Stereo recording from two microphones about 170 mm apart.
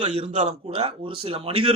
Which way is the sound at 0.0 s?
40° right (ahead or behind).